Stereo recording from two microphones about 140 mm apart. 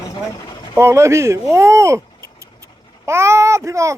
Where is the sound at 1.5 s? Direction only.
20° right (ahead or behind).